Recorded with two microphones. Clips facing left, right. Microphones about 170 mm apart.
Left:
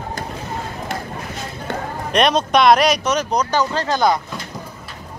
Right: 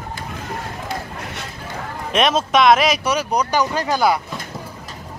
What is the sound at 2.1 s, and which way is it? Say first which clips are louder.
Speech: left 1 dB; centre (ahead or behind).